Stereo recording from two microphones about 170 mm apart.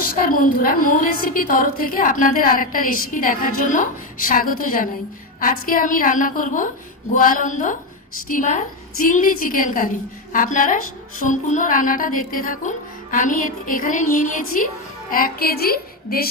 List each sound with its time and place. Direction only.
0.0 s a woman's voice: 55° left (ahead or behind)
15.1 s music: 60° left (ahead or behind)